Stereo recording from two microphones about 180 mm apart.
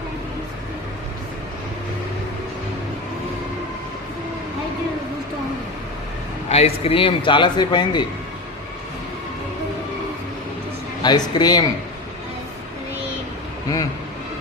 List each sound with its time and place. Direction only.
6.5 s a man's voice: 35° left (ahead or behind)
11.0 s a man's voice: 25° left (ahead or behind)